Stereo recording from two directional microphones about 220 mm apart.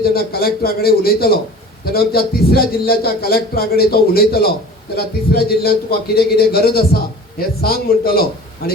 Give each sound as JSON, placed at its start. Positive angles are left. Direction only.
{"t": 0.0, "sound": "a man's voice", "side_deg": 45}